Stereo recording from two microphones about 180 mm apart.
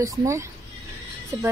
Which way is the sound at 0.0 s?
20° right (ahead or behind).